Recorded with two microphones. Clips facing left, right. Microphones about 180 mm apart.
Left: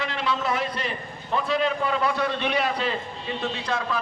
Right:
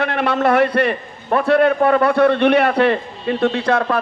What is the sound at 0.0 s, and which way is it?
A man's voice, 60° right (ahead or behind).